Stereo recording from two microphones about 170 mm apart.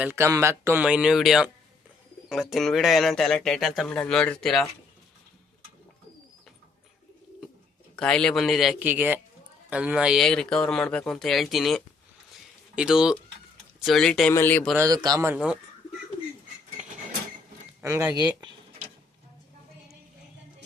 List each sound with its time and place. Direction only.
0.0 s speech: 15° right (ahead or behind); by 4.7 s centre (ahead or behind)
7.9 s speech: 5° left (ahead or behind)
14.8 s a man's voice: 20° right (ahead or behind)
17.7 s speech: 15° right (ahead or behind)